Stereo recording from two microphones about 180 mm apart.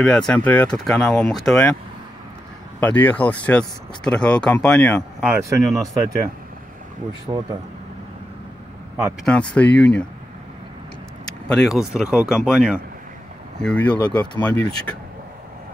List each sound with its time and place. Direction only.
0.0 s speech: 5° left (ahead or behind)
2.8 s speech: 10° left (ahead or behind)
5.2 s speech: 10° right (ahead or behind)
5.6 s speech: centre (ahead or behind)
7.3 s speech: 20° right (ahead or behind)
9.2 s speech: 5° left (ahead or behind)
11.4 s speech: 5° left (ahead or behind)